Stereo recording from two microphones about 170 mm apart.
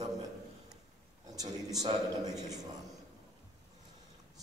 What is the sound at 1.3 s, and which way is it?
Speech, 20° right (ahead or behind).